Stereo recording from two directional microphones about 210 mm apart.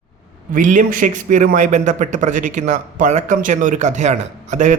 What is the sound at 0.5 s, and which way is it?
A man's voice, 35° right (ahead or behind).